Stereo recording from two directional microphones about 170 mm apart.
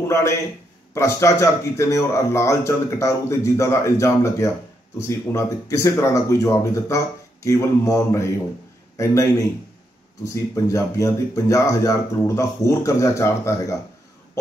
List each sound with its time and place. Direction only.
0.1 s a man's voice: 15° left (ahead or behind)